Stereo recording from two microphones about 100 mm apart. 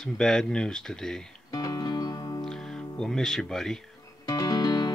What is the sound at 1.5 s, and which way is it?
Music, 35° left (ahead or behind).